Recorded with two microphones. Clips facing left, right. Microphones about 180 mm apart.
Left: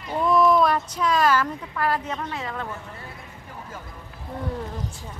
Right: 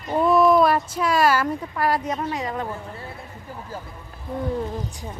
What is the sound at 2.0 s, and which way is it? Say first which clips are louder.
Speech: right 5 dB; 35° right (ahead or behind).